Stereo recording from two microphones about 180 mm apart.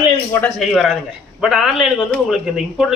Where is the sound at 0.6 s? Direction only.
Centre (ahead or behind).